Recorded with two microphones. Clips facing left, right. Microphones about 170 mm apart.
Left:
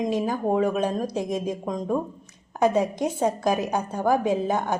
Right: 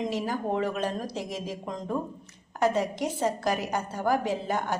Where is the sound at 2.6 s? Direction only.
20° left (ahead or behind).